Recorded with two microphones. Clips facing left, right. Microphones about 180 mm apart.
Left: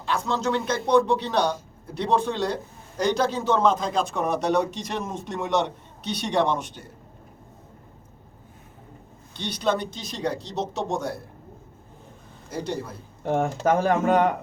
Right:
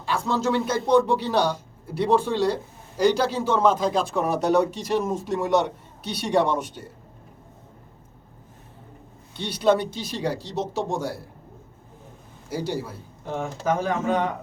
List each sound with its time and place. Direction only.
0.0 s a man's voice: 10° right (ahead or behind)
9.4 s speech: 5° right (ahead or behind)
12.5 s speech: 5° right (ahead or behind)
13.2 s speech: 55° left (ahead or behind)